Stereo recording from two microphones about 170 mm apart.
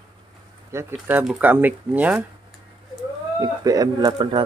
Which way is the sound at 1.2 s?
5° right (ahead or behind).